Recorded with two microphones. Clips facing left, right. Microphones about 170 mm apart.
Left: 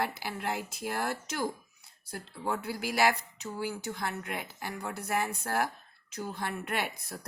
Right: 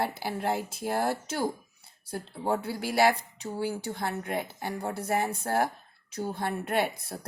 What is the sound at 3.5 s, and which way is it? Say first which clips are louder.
Speech: right 4 dB; 35° right (ahead or behind).